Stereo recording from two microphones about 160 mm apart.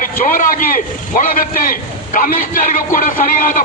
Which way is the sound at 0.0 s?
55° left (ahead or behind).